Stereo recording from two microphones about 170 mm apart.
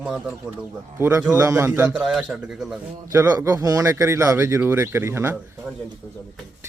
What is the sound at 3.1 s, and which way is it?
Speech, 15° right (ahead or behind).